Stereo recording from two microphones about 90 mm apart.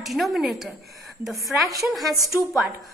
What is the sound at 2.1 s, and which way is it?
Speech, 30° left (ahead or behind).